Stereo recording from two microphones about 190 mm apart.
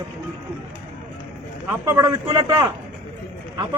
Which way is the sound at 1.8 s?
15° right (ahead or behind).